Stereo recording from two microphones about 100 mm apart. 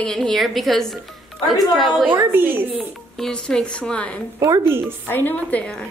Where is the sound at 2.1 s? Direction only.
20° right (ahead or behind).